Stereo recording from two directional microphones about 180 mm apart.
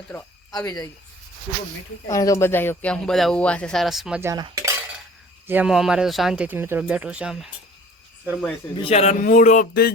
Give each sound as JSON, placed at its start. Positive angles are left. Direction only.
{"t": 0.1, "sound": "speech", "side_deg": 15}
{"t": 2.0, "sound": "speech", "side_deg": 15}
{"t": 4.2, "sound": "cutlery", "side_deg": -15}
{"t": 5.5, "sound": "speech", "side_deg": -5}
{"t": 8.2, "sound": "cricket", "side_deg": -5}
{"t": 8.7, "sound": "speech", "side_deg": 30}